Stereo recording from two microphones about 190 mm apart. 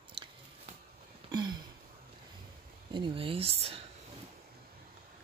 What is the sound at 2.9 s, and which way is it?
Speech, 25° right (ahead or behind).